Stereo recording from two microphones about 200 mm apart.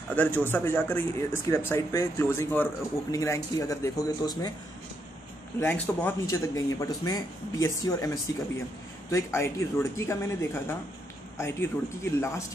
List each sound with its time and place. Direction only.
0.1 s speech: 10° left (ahead or behind)
5.6 s speech: 10° left (ahead or behind)